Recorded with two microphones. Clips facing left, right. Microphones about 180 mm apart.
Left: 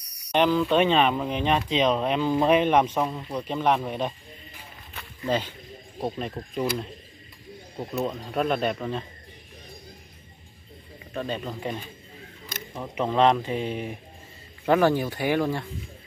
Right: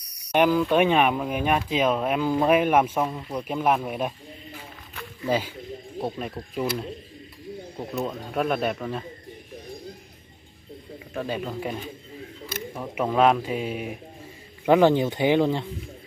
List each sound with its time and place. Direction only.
0.3 s speech: 10° right (ahead or behind)
5.2 s speech: 10° right (ahead or behind)
11.1 s speech: 10° right (ahead or behind)
14.7 s speech: 20° right (ahead or behind)